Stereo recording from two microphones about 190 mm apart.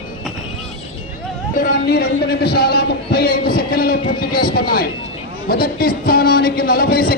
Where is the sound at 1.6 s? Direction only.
55° left (ahead or behind).